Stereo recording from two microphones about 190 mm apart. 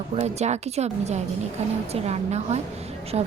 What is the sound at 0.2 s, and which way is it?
A woman's voice, 35° right (ahead or behind).